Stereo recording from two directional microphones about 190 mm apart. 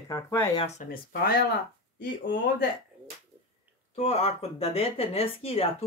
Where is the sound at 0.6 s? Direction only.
40° left (ahead or behind).